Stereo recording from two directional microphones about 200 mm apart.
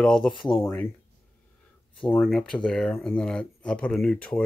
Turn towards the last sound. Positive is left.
turn(degrees=5)  # may be behind; listen again after turning